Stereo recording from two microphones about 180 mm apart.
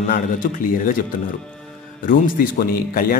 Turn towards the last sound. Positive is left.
turn(degrees=55)  # may be behind; listen again after turning